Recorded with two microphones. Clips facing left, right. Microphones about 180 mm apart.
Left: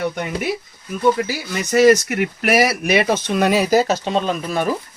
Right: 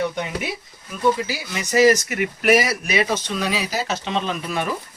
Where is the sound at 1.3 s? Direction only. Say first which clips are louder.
Left 3 dB; 60° left (ahead or behind); by 4.7 s 40° left (ahead or behind).